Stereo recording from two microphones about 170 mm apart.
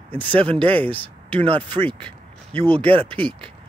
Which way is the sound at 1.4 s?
35° right (ahead or behind).